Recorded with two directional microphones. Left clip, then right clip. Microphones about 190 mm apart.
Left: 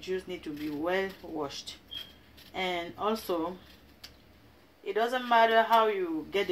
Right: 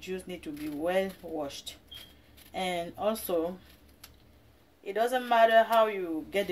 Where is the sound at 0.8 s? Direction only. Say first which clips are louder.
Right 2 dB; 45° right (ahead or behind).